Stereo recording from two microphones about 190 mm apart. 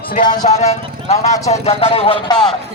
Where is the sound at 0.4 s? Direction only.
35° left (ahead or behind).